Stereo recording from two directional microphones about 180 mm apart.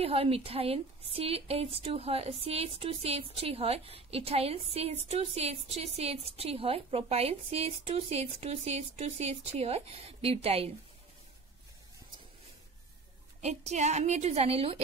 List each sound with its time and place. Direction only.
0.0 s a woman's voice: 35° right (ahead or behind)
13.4 s a woman's voice: 40° right (ahead or behind)